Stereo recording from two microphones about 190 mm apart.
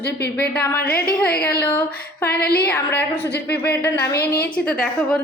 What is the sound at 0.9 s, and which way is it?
Speech, 55° left (ahead or behind).